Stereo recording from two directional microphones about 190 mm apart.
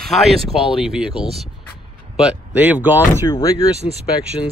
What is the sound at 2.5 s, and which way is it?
Speech, 10° right (ahead or behind).